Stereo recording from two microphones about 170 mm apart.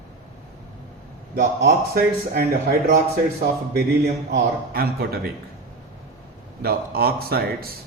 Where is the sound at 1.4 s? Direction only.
75° right (ahead or behind).